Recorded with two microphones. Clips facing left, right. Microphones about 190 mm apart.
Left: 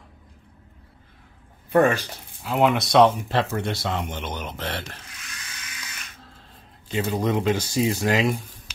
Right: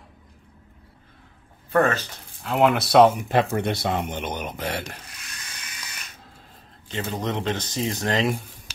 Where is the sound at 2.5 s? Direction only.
Centre (ahead or behind).